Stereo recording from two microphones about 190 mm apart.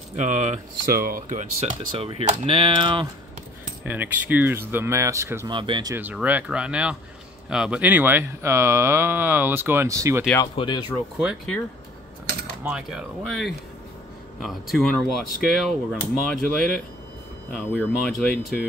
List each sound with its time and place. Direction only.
0.1 s speech: 40° right (ahead or behind)
3.8 s speech: 10° right (ahead or behind)
5.5 s speech: 25° right (ahead or behind)
5.9 s speech: 10° right (ahead or behind)
10.4 s speech: 25° left (ahead or behind)
11.1 s speech: centre (ahead or behind)
12.6 s speech: 5° right (ahead or behind)